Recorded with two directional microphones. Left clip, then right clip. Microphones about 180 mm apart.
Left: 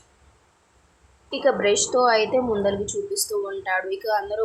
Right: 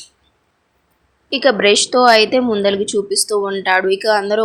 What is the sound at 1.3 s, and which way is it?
Speech, 45° right (ahead or behind).